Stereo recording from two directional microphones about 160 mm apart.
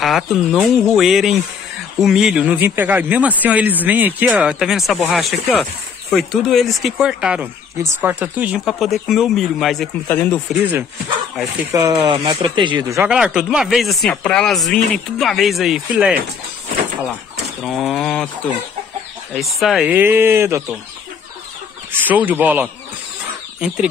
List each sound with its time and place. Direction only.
0.0 s speech: centre (ahead or behind)
10.5 s speech: 10° right (ahead or behind)
11.7 s speech: 25° right (ahead or behind)
13.1 s speech: 5° right (ahead or behind)
17.6 s speech: centre (ahead or behind)
19.3 s speech: centre (ahead or behind)
19.9 s speech: 15° right (ahead or behind)
21.9 s speech: 10° right (ahead or behind)